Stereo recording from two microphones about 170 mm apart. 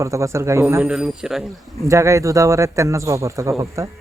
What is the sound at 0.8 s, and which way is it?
Speech, 5° right (ahead or behind).